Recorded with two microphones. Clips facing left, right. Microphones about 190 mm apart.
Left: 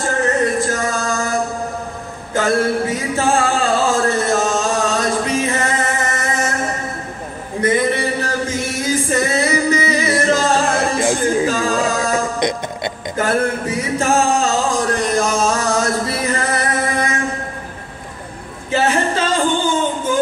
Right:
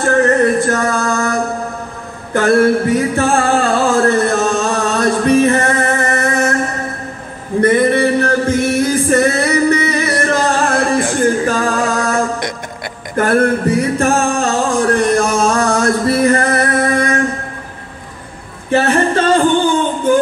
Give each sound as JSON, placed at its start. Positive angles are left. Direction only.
{"t": 0.0, "sound": "music", "side_deg": -60}
{"t": 7.6, "sound": "music", "side_deg": -60}
{"t": 11.0, "sound": "a sound", "side_deg": 15}
{"t": 11.4, "sound": "music", "side_deg": -55}
{"t": 12.0, "sound": "music", "side_deg": 20}
{"t": 13.2, "sound": "music", "side_deg": -55}
{"t": 18.7, "sound": "a sound", "side_deg": -60}